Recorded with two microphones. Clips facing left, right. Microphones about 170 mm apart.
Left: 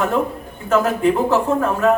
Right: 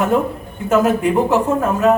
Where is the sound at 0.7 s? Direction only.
15° right (ahead or behind).